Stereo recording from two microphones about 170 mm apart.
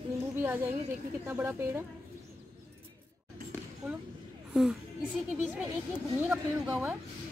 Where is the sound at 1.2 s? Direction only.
15° right (ahead or behind).